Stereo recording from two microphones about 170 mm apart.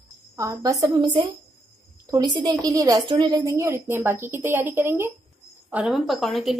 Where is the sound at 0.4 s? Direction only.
20° right (ahead or behind).